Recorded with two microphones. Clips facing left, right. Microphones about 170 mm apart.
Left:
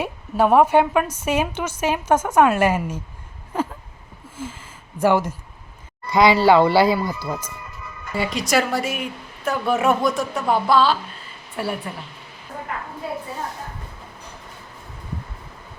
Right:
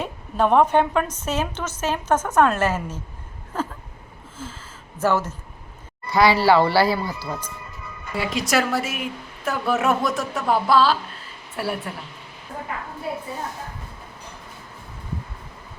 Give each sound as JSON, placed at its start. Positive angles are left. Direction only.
{"t": 0.0, "sound": "a woman's voice", "side_deg": 10}
{"t": 4.9, "sound": "a woman's voice", "side_deg": 15}
{"t": 8.1, "sound": "a woman's voice", "side_deg": 0}